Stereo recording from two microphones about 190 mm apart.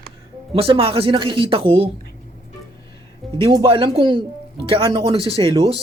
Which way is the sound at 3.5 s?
25° right (ahead or behind).